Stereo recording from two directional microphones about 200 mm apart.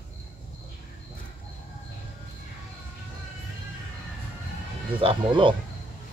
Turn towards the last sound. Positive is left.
turn(degrees=-25)  # may be behind; listen again after turning